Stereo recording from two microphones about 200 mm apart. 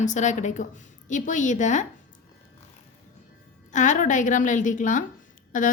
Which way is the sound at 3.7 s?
40° left (ahead or behind).